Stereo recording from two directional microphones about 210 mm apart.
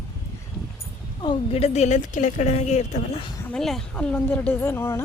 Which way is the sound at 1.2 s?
25° left (ahead or behind).